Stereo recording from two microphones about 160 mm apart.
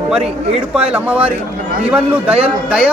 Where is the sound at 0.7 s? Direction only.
10° right (ahead or behind).